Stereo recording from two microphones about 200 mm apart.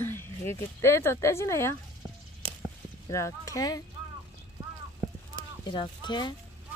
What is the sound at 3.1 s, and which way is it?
Speech, 15° left (ahead or behind).